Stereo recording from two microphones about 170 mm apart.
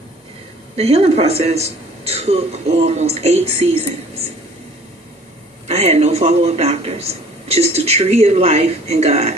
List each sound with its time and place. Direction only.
0.8 s speech: 40° right (ahead or behind)
5.6 s speech: 40° right (ahead or behind)